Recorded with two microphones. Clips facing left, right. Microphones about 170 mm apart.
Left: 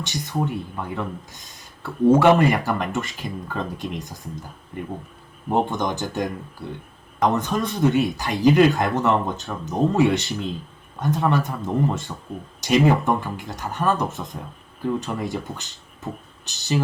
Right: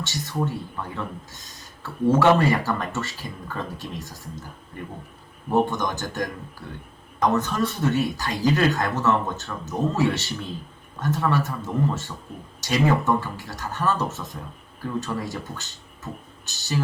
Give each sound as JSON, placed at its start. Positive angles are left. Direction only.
{"t": 0.0, "sound": "speech", "side_deg": 15}
{"t": 1.8, "sound": "speech", "side_deg": 15}
{"t": 5.5, "sound": "speech", "side_deg": 15}